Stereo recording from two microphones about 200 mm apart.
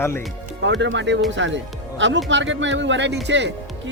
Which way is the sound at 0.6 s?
65° right (ahead or behind).